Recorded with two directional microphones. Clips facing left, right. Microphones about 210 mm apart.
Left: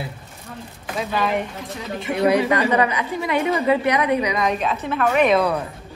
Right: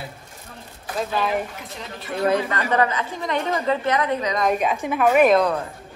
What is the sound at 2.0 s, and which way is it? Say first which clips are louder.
A woman's voice: left 4 dB; 15° left (ahead or behind).